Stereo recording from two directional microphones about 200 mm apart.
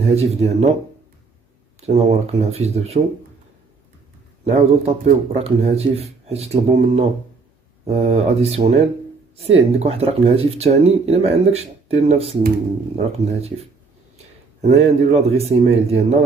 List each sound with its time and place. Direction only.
0.0 s speech: 30° right (ahead or behind)
2.0 s speech: 30° right (ahead or behind)
4.5 s speech: 30° right (ahead or behind)
14.8 s speech: 30° right (ahead or behind)